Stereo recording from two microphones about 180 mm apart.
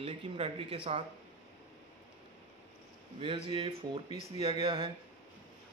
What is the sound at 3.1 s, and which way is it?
Speech, 30° right (ahead or behind).